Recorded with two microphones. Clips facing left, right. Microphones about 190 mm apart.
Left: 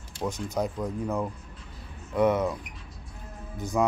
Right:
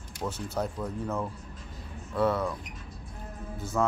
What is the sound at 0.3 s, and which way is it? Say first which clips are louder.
Speech: left 3 dB; 10° left (ahead or behind).